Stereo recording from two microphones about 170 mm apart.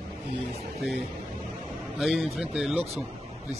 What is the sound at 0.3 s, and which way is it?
Speech, 40° right (ahead or behind).